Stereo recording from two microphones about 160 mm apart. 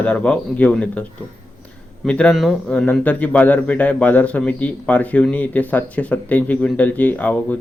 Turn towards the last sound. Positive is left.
turn(degrees=10)  # may be behind; listen again after turning